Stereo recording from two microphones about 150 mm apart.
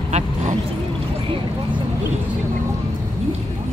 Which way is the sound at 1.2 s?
35° right (ahead or behind).